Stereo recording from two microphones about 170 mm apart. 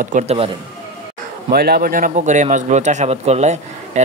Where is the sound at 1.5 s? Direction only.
65° right (ahead or behind).